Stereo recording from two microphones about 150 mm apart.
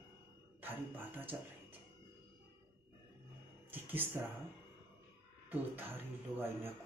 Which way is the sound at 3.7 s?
10° right (ahead or behind).